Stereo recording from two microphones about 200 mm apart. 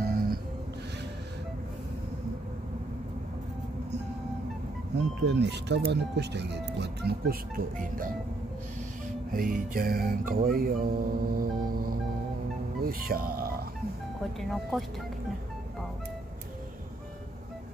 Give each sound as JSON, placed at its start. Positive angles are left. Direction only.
{"t": 0.0, "sound": "music", "side_deg": -50}
{"t": 5.2, "sound": "speech", "side_deg": -60}
{"t": 9.3, "sound": "music", "side_deg": -45}
{"t": 12.8, "sound": "speech", "side_deg": -50}
{"t": 14.5, "sound": "speech", "side_deg": 0}